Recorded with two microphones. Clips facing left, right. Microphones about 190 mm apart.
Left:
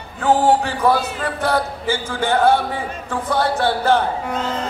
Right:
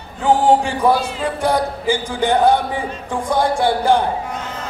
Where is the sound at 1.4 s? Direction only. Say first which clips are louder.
Right 2 dB; 15° right (ahead or behind).